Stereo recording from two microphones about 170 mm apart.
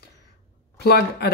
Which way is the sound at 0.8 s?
70° left (ahead or behind).